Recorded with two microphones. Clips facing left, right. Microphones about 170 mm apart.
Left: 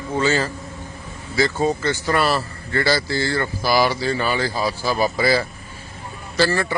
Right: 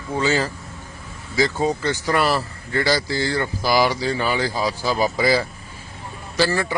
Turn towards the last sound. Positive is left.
turn(degrees=-15)  # may be behind; listen again after turning